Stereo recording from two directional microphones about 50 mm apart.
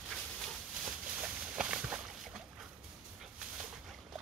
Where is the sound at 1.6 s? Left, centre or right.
Centre.